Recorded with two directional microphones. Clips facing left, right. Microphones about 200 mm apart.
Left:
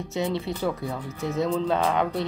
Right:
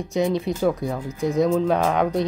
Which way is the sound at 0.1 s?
15° right (ahead or behind).